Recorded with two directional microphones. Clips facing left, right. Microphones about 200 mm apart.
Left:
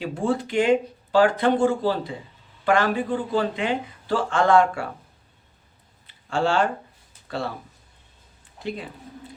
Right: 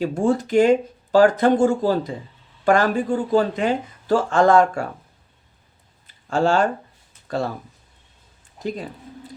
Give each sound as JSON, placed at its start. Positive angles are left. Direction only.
{"t": 0.0, "sound": "speech", "side_deg": -45}
{"t": 6.1, "sound": "a sound", "side_deg": -40}
{"t": 7.3, "sound": "speech", "side_deg": -45}
{"t": 8.5, "sound": "speech", "side_deg": -40}